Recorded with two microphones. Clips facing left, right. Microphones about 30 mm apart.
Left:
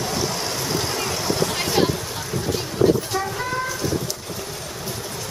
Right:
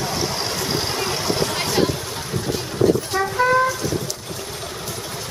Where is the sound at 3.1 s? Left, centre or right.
Right.